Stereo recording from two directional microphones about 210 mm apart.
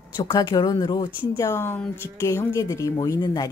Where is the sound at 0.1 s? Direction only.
20° left (ahead or behind).